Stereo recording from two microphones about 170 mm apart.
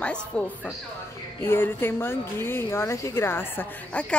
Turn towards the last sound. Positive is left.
turn(degrees=10)  # may be behind; listen again after turning